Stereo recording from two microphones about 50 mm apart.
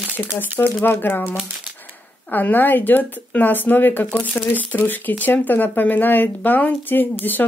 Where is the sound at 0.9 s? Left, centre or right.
Left.